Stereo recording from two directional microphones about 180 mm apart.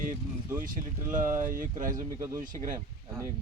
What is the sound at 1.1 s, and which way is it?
Speech, 45° right (ahead or behind).